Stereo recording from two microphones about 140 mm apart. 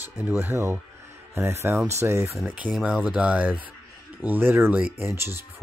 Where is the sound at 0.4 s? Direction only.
20° right (ahead or behind).